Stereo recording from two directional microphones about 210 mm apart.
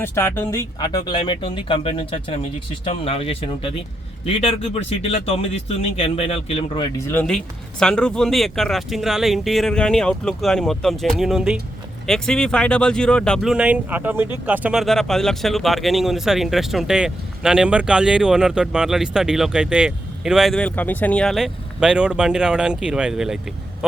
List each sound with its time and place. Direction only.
0.0 s speech: 10° left (ahead or behind); by 6.8 s 25° left (ahead or behind)
7.1 s speech: 5° left (ahead or behind)